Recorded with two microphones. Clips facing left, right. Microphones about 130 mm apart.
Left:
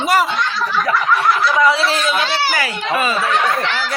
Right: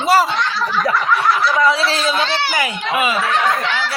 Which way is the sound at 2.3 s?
5° left (ahead or behind).